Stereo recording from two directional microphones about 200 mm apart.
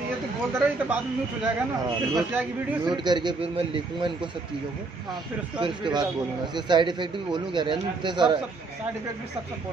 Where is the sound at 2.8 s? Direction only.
20° right (ahead or behind).